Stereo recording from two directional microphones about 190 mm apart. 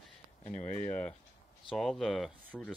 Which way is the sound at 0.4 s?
35° left (ahead or behind).